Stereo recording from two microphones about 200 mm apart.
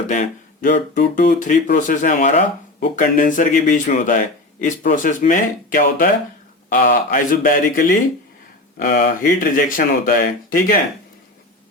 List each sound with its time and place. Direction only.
0.1 s speech: 40° left (ahead or behind)